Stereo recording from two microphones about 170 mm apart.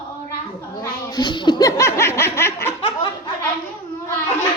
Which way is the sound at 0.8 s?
25° left (ahead or behind).